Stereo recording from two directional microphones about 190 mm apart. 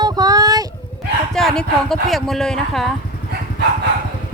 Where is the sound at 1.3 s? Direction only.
Centre (ahead or behind).